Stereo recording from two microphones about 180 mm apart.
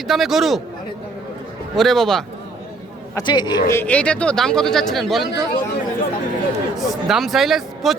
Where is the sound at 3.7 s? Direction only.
10° left (ahead or behind).